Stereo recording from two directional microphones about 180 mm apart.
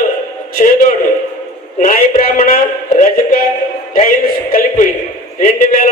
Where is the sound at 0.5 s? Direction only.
50° left (ahead or behind).